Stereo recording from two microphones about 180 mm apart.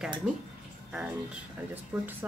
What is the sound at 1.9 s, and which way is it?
Speech, 5° right (ahead or behind).